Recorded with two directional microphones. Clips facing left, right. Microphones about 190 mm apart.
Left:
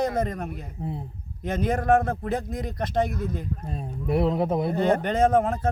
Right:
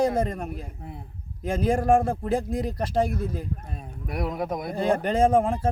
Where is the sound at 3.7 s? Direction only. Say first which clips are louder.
Left 9 dB; 25° left (ahead or behind).